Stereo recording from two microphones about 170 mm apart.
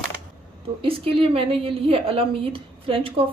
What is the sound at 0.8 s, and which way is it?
A woman's voice, 30° right (ahead or behind).